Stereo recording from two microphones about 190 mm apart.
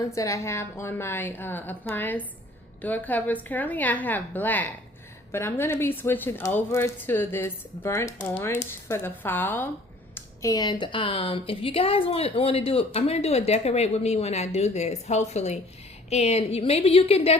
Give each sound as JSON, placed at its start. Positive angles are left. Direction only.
{"t": 0.0, "sound": "speech", "side_deg": 15}